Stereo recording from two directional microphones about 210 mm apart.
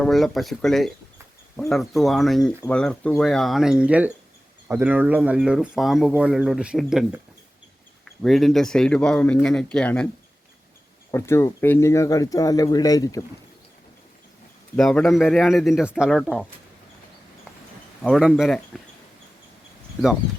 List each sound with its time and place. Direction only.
0.0 s speech: centre (ahead or behind)
8.2 s speech: centre (ahead or behind)
11.1 s speech: 10° left (ahead or behind)
14.8 s speech: centre (ahead or behind)
18.0 s speech: centre (ahead or behind)